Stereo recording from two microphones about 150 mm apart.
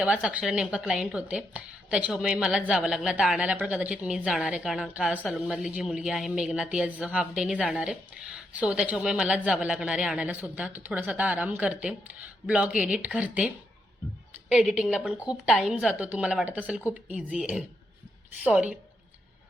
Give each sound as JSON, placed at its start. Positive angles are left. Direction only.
{"t": 0.0, "sound": "a woman's voice", "side_deg": -5}
{"t": 14.5, "sound": "a woman's voice", "side_deg": -5}